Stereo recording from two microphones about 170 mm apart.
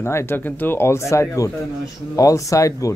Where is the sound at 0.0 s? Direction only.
15° left (ahead or behind).